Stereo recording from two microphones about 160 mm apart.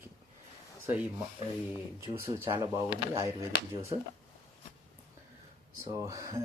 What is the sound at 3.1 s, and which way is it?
Speech, 20° right (ahead or behind).